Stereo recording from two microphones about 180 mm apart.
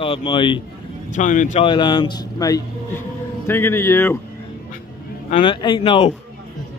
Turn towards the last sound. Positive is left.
turn(degrees=30)  # may be behind; listen again after turning